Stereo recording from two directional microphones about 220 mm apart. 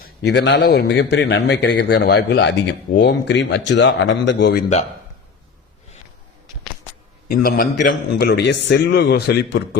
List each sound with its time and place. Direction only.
0.0 s a man's voice: 50° left (ahead or behind)
7.3 s a man's voice: 45° left (ahead or behind)